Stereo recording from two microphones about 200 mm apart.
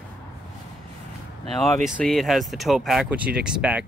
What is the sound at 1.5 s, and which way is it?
Speech, centre (ahead or behind).